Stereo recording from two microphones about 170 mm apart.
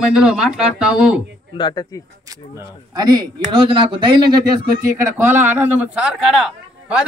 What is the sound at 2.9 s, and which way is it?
Speech, 25° right (ahead or behind).